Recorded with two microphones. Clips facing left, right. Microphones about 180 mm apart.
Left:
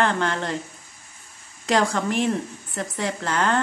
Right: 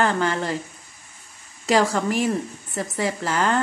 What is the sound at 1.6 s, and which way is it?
Speech, 5° right (ahead or behind).